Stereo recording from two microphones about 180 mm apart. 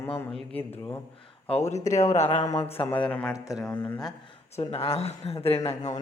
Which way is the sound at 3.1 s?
5° left (ahead or behind).